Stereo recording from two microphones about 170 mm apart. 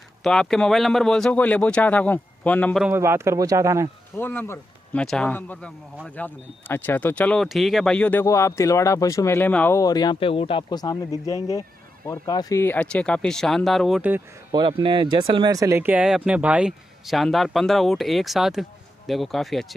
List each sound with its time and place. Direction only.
0.2 s speech: 5° left (ahead or behind)
2.9 s speech: 15° right (ahead or behind)
4.2 s speech: 10° left (ahead or behind)
14.5 s speech: 30° right (ahead or behind); by 19.7 s centre (ahead or behind)